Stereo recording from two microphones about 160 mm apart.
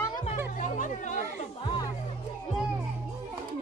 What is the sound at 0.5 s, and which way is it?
Music, 50° left (ahead or behind).